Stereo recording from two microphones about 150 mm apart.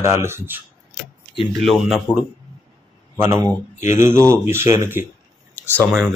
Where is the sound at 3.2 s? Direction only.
15° right (ahead or behind).